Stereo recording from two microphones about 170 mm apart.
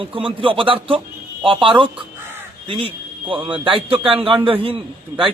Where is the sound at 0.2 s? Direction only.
30° right (ahead or behind).